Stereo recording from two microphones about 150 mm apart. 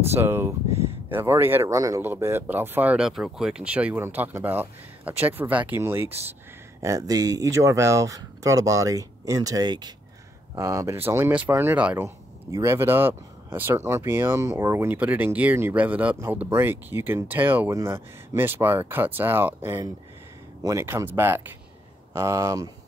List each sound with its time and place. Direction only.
0.1 s speech: 15° right (ahead or behind)